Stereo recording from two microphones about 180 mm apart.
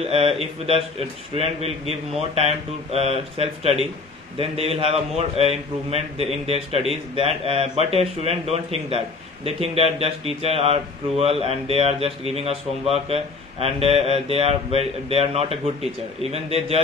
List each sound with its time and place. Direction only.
0.0 s a man's voice: 35° right (ahead or behind)